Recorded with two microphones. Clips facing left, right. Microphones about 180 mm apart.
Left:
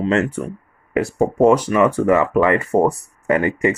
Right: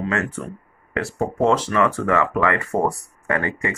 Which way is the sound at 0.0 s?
20° left (ahead or behind).